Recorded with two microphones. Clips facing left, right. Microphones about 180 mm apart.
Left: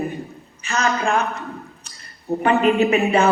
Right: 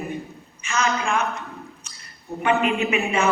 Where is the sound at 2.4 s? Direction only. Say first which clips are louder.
Left 4 dB; 35° left (ahead or behind).